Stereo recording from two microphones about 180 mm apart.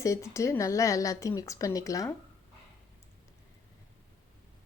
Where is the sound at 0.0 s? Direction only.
15° left (ahead or behind).